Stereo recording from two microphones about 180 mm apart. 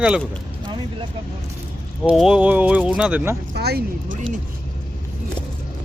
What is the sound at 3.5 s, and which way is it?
Speech, 65° right (ahead or behind).